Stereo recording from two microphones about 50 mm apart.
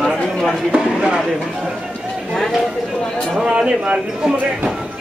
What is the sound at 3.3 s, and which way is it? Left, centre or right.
Speech, centre.